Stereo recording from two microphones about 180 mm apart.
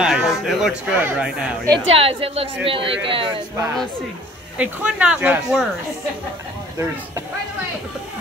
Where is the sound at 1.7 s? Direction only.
30° right (ahead or behind).